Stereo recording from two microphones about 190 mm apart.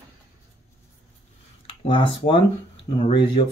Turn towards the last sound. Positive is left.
turn(degrees=25)  # may be behind; listen again after turning